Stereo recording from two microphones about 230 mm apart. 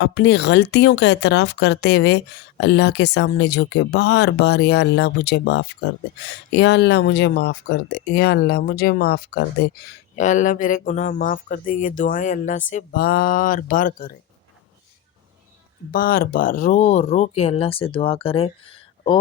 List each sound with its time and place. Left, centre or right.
0.0 s speech: left
15.9 s speech: left